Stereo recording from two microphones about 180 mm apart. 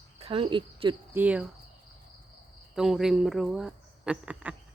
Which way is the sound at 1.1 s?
10° right (ahead or behind).